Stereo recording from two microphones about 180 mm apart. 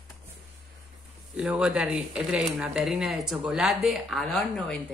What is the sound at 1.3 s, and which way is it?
Speech, 5° right (ahead or behind).